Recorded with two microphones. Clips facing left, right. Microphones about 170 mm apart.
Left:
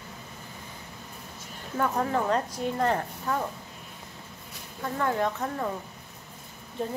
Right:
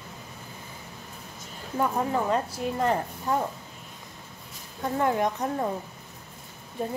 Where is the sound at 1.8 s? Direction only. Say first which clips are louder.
Right 1 dB; 10° right (ahead or behind).